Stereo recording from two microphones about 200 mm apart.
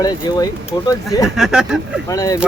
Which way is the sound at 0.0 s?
20° left (ahead or behind).